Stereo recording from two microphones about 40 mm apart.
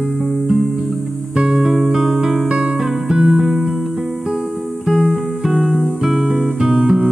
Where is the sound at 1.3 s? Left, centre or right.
Right.